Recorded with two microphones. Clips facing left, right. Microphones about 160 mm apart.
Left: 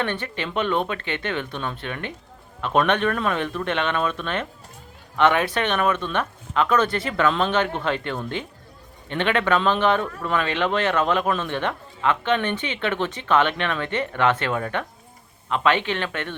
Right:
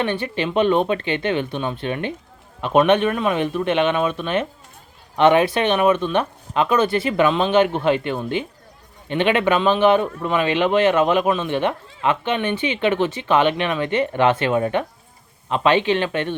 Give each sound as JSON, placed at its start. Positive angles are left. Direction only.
{"t": 0.0, "sound": "a man's voice", "side_deg": -15}